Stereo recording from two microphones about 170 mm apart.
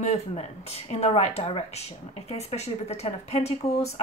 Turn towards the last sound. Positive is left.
turn(degrees=40)  # may be behind; listen again after turning